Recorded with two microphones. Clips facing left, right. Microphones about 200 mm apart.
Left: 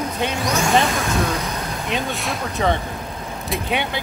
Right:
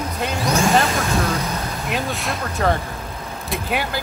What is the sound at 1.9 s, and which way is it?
Speech, centre (ahead or behind).